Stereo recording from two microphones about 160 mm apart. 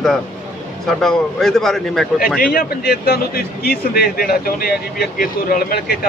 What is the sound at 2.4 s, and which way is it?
A man's voice, 75° left (ahead or behind).